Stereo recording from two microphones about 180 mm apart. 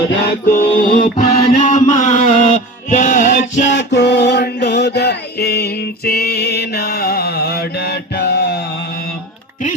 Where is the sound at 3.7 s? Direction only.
75° left (ahead or behind).